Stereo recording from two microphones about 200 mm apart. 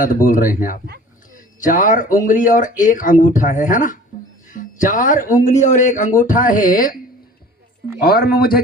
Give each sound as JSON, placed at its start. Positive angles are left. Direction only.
{"t": 0.0, "sound": "speech", "side_deg": 40}
{"t": 8.0, "sound": "speech", "side_deg": 50}